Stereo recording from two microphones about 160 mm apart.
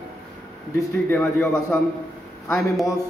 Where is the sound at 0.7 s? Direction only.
10° left (ahead or behind).